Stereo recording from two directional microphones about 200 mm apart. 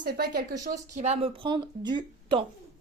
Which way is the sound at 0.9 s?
35° right (ahead or behind).